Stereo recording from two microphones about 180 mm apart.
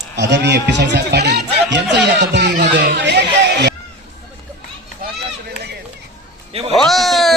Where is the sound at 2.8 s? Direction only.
65° right (ahead or behind).